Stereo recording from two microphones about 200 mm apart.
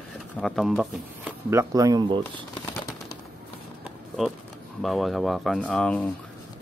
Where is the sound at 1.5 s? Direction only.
15° right (ahead or behind).